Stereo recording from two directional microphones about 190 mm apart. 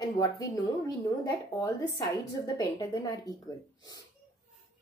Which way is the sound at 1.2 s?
20° left (ahead or behind).